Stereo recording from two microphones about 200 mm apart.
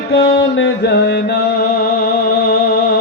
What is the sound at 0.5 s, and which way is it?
Music, 60° left (ahead or behind).